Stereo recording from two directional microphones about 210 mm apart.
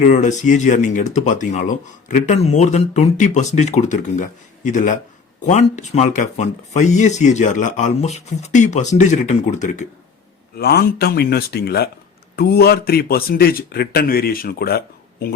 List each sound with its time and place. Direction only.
0.0 s speech: 35° left (ahead or behind)
10.5 s speech: 50° left (ahead or behind)